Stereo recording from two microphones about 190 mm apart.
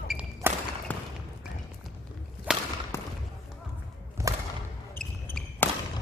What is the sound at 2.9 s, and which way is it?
Basketball bounce, 15° left (ahead or behind).